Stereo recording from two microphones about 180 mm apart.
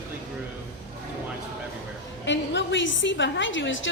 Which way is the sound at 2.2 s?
85° left.